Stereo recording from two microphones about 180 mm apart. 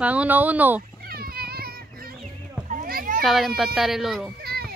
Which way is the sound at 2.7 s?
50° right (ahead or behind).